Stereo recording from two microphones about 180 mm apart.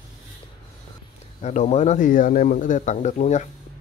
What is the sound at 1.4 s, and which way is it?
Speech, 40° left (ahead or behind).